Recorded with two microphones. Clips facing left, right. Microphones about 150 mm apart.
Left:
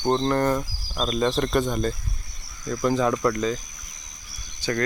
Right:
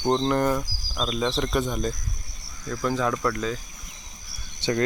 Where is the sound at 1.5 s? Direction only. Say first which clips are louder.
Left 3 dB; 5° right (ahead or behind).